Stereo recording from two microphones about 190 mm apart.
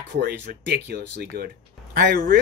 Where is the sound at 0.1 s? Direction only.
55° right (ahead or behind).